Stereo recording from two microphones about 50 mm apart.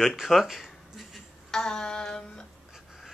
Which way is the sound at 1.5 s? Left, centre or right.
Centre.